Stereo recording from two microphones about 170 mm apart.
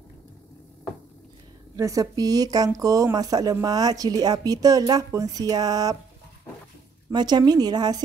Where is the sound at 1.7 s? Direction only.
20° right (ahead or behind).